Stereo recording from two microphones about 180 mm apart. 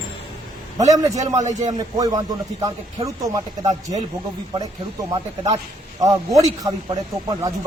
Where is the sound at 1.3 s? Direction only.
40° right (ahead or behind).